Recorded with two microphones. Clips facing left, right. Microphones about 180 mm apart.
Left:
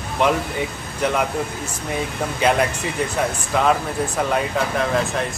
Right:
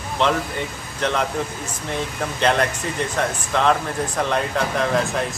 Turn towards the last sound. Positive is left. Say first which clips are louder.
# even
turn(degrees=0)  # may be behind; listen again after turning